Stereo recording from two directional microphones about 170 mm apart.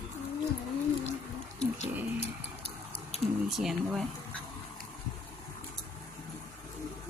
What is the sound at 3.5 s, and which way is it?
Speech, centre (ahead or behind).